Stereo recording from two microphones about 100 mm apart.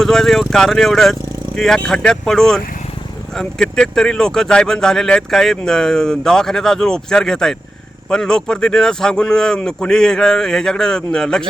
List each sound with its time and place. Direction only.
0.0 s speech: 5° left (ahead or behind)